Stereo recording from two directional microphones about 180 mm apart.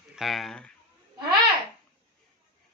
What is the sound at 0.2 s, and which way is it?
Speech, centre (ahead or behind).